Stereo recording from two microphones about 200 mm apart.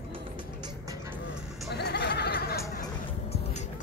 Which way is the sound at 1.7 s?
55° left (ahead or behind).